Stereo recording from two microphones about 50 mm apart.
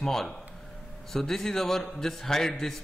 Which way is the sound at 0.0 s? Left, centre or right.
Centre.